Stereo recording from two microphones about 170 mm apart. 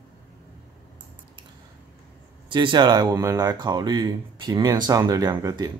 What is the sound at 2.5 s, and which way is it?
Speech, 30° right (ahead or behind).